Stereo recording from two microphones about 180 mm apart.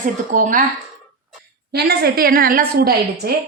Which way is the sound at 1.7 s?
65° right (ahead or behind).